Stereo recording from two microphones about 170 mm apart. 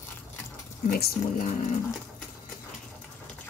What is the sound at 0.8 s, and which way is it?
Speech, 55° left (ahead or behind).